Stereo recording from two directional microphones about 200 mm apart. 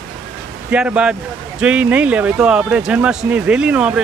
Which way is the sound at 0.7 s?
5° right (ahead or behind).